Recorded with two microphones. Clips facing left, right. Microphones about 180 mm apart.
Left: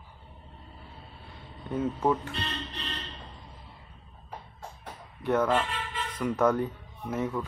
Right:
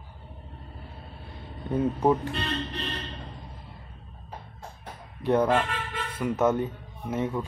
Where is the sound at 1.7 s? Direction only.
20° right (ahead or behind).